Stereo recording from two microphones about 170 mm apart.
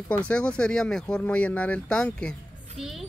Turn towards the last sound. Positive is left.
turn(degrees=0)  # may be behind; listen again after turning